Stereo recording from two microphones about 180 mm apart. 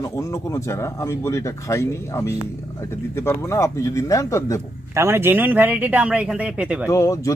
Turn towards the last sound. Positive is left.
turn(degrees=15)  # may be behind; listen again after turning